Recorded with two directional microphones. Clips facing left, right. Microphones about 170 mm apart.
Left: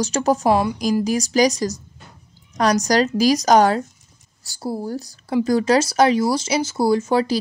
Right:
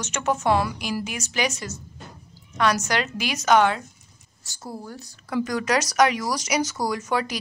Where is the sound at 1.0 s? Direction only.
35° left (ahead or behind).